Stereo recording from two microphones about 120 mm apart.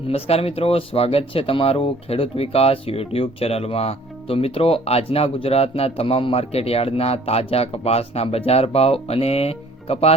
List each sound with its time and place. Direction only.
0.1 s speech: 55° left (ahead or behind)